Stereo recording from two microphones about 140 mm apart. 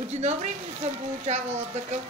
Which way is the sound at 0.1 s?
55° right (ahead or behind).